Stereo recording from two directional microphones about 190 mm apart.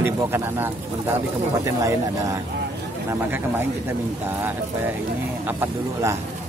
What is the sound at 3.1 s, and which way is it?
Speech, 10° right (ahead or behind).